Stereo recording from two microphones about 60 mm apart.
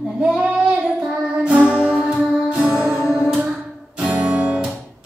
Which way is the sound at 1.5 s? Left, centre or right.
Right.